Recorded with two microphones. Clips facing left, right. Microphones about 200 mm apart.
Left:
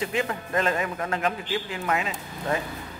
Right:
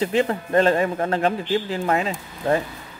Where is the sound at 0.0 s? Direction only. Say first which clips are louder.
Right 7 dB; 30° right (ahead or behind).